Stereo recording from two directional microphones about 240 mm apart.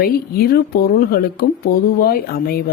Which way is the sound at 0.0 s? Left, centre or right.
Left.